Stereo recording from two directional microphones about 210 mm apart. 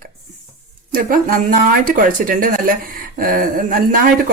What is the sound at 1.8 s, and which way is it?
Speech, 40° right (ahead or behind).